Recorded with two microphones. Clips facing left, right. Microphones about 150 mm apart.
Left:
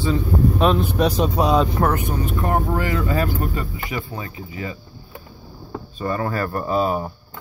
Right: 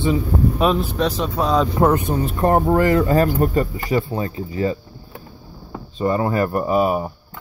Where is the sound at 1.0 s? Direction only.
15° left (ahead or behind).